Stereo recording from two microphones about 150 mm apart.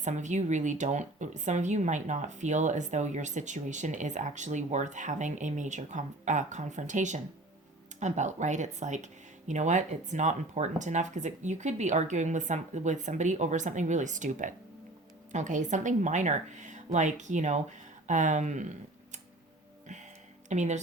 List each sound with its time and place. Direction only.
0.0 s speech: 55° right (ahead or behind)
20.5 s speech: 50° right (ahead or behind)